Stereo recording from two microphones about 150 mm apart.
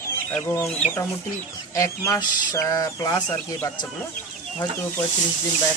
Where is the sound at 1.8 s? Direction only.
20° left (ahead or behind).